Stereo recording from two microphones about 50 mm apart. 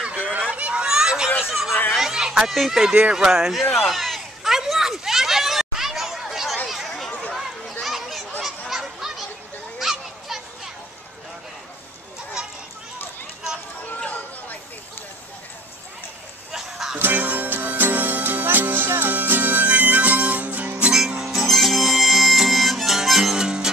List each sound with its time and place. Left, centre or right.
0.0 s a sound: right; by 1.8 s centre
2.0 s children playing: centre
2.5 s speech: centre
3.8 s a sound: centre
7.1 s chatter: left
7.8 s a sound: centre
8.5 s honk: centre
9.8 s children playing: centre
12.4 s children playing: centre
14.0 s chatter: left
16.5 s music: centre
17.0 s music: right
21.2 s music: centre
21.5 s harmonica: centre